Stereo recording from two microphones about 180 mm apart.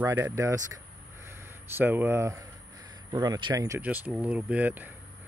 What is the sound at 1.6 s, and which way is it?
Speech, 10° right (ahead or behind).